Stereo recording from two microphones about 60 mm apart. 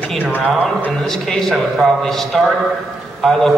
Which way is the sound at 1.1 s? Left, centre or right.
Centre.